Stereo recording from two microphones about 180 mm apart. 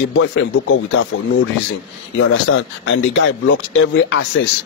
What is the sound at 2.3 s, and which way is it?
Speech, 90° left.